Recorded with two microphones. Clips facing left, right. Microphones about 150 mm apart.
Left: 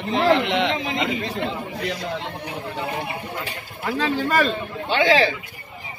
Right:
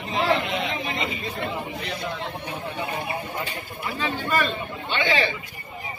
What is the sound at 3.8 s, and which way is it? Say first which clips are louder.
A man's voice: left 6 dB; 90° left.